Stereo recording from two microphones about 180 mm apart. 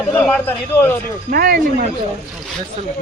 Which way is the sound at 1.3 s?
55° right (ahead or behind).